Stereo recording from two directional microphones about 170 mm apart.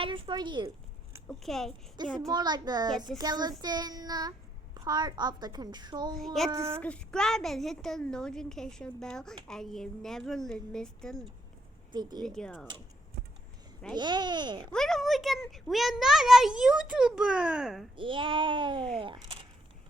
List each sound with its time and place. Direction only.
0.0 s a child's voice: 30° right (ahead or behind)
1.3 s a child's voice: centre (ahead or behind)
2.1 s a child's voice: 25° right (ahead or behind)
6.1 s a child's voice: centre (ahead or behind)
11.9 s speech: 25° right (ahead or behind)
12.2 s a child's voice: 5° left (ahead or behind)
13.9 s a child's voice: 25° right (ahead or behind)
14.7 s a child's voice: centre (ahead or behind)
17.9 s a child's voice: 30° right (ahead or behind)